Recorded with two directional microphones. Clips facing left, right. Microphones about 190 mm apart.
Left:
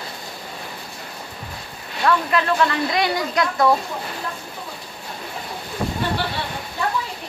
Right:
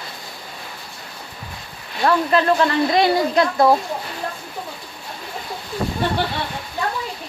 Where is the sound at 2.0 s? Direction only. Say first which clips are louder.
Right 3 dB; 35° right (ahead or behind).